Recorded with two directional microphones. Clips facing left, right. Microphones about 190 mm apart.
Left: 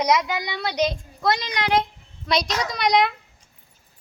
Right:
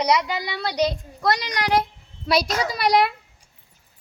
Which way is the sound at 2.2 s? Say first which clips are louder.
Right 2 dB; 5° right (ahead or behind).